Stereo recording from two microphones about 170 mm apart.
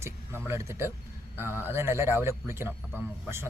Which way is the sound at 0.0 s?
15° right (ahead or behind).